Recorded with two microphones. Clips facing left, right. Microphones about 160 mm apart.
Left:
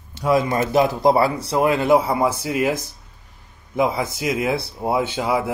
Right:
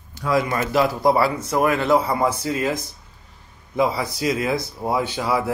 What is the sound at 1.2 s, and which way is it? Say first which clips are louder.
Speech: left 1 dB; 35° left (ahead or behind).